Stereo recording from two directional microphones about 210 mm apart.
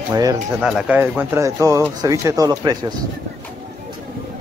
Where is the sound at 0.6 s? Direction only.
5° right (ahead or behind).